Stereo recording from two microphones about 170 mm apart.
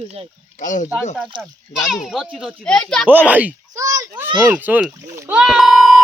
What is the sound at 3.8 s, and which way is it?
A child's voice, 20° right (ahead or behind).